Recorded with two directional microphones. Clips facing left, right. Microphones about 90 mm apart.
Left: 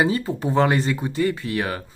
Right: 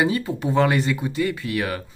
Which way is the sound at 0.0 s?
30° left (ahead or behind).